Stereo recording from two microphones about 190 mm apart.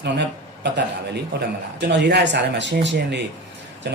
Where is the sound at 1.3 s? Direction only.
60° right (ahead or behind).